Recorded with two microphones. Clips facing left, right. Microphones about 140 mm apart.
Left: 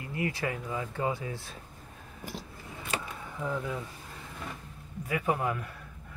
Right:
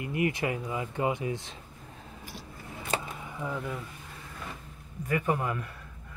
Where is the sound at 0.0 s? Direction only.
15° right (ahead or behind).